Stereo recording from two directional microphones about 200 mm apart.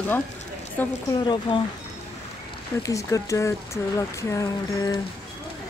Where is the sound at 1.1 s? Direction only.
25° left (ahead or behind).